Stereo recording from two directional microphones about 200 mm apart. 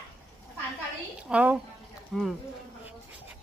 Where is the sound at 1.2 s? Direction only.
5° right (ahead or behind).